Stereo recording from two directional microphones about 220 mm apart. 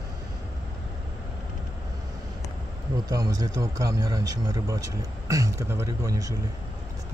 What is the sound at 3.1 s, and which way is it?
A man's voice, 15° right (ahead or behind).